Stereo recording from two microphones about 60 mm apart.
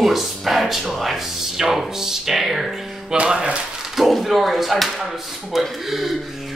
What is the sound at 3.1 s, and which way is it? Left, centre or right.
Speech, centre.